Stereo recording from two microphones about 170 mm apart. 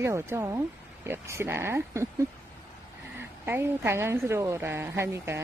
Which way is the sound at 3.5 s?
15° right (ahead or behind).